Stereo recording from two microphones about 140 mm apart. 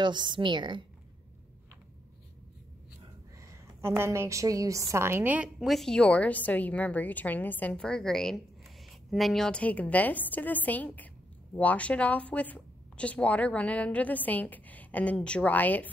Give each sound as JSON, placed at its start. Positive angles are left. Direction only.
{"t": 0.0, "sound": "a woman's voice", "side_deg": -35}
{"t": 3.3, "sound": "a woman's voice", "side_deg": -20}